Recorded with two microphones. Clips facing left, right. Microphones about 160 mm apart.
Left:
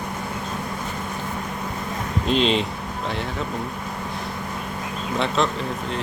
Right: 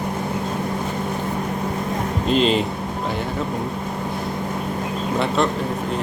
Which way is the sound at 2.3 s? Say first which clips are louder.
Right 2 dB; centre (ahead or behind).